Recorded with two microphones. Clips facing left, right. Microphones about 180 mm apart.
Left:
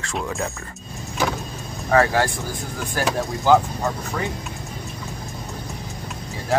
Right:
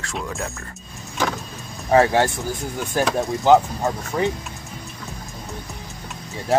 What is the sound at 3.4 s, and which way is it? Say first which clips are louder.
Speech: right 2 dB; 20° right (ahead or behind).